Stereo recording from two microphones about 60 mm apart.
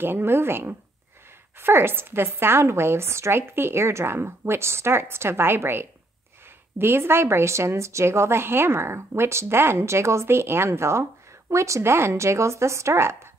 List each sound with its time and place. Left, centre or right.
0.0 s a woman's voice: right